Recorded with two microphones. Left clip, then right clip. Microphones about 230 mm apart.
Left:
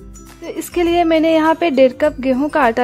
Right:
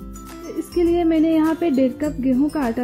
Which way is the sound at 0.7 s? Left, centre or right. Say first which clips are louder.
Left 4 dB; left.